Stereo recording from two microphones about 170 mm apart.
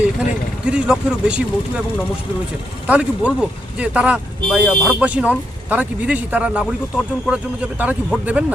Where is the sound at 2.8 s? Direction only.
10° right (ahead or behind).